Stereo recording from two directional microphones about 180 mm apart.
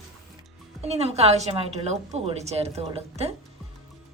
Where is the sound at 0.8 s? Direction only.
35° right (ahead or behind).